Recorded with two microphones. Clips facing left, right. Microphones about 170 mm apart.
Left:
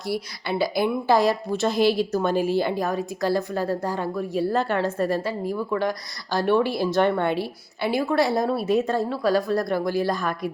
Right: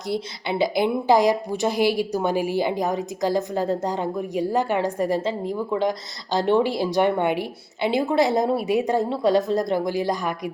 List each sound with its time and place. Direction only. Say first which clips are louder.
0.1 s a woman's voice: right 1 dB; 20° right (ahead or behind)